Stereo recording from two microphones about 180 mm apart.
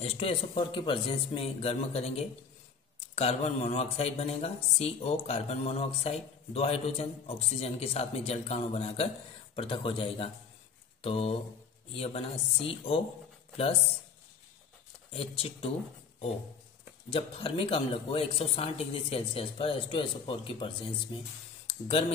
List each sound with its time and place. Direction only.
0.0 s speech: 30° left (ahead or behind)
11.0 s mantra: 35° left (ahead or behind)
11.9 s speech: 35° left (ahead or behind)
15.1 s speech: 30° left (ahead or behind)
17.1 s speech: 30° left (ahead or behind)
21.6 s a sound: 35° left (ahead or behind)